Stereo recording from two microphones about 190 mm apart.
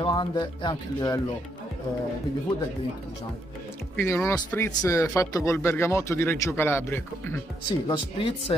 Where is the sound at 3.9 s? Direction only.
15° left (ahead or behind).